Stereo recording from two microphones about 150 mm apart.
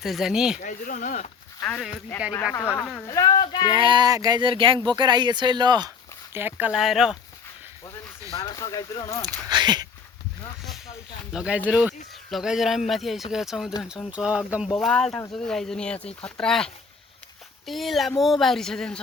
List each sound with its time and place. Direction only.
0.0 s speech: centre (ahead or behind)
0.6 s speech: 60° left (ahead or behind)
1.6 s speech: 5° left (ahead or behind)
2.6 s speech: 25° left (ahead or behind)
3.8 s speech: 30° right (ahead or behind)
6.3 s speech: 10° right (ahead or behind)
6.7 s speech: centre (ahead or behind)
8.4 s speech: 25° left (ahead or behind)
9.5 s speech: 30° right (ahead or behind)
11.3 s speech: 5° right (ahead or behind)
14.8 s speech: 5° left (ahead or behind)
17.7 s speech: centre (ahead or behind)